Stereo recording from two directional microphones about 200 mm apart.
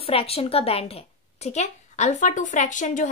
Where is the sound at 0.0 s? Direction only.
30° left (ahead or behind).